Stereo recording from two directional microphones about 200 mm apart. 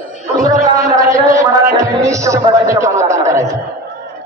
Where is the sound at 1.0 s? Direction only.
15° right (ahead or behind).